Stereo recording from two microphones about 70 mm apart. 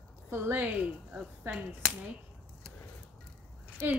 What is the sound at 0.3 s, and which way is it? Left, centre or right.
A woman's voice, right.